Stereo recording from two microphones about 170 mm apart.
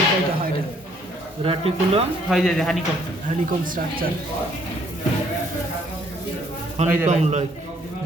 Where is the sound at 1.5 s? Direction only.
35° right (ahead or behind).